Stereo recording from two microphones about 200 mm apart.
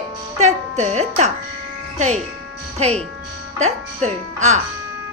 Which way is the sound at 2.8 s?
30° right (ahead or behind).